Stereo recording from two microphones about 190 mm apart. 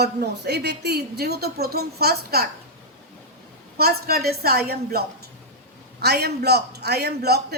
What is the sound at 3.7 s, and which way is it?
A woman's voice, 55° right (ahead or behind).